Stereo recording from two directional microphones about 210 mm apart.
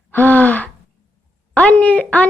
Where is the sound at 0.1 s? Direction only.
10° left (ahead or behind).